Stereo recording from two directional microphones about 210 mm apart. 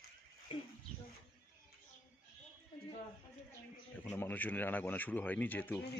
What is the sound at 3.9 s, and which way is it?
Speech, 10° left (ahead or behind).